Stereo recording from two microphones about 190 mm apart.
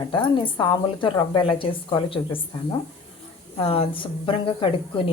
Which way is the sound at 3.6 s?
30° left (ahead or behind).